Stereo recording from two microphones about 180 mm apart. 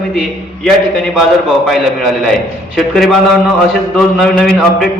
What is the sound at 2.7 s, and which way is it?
A man's voice, centre (ahead or behind).